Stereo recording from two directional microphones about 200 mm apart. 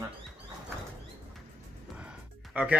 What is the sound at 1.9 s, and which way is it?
Music, 5° right (ahead or behind).